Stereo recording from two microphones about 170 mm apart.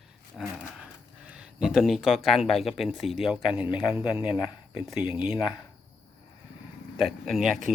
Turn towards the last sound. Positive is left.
turn(degrees=0)  # may be behind; listen again after turning